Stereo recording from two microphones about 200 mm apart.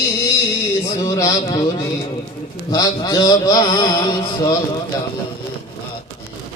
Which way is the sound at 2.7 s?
20° left (ahead or behind).